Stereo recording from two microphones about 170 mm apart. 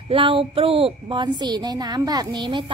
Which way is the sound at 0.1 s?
30° right (ahead or behind).